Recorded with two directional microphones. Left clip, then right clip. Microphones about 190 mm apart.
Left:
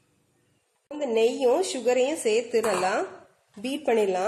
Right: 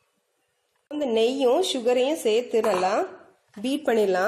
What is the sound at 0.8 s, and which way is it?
Speech, 45° right (ahead or behind).